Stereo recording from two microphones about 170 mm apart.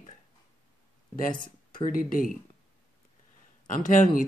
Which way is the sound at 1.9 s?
55° left (ahead or behind).